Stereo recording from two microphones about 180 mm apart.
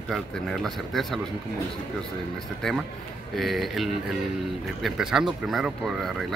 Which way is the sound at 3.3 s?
Centre (ahead or behind).